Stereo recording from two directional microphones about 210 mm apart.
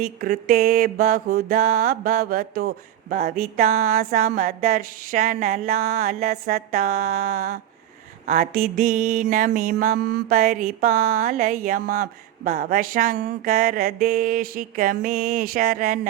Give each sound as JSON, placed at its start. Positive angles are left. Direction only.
{"t": 0.0, "sound": "mantra", "side_deg": -40}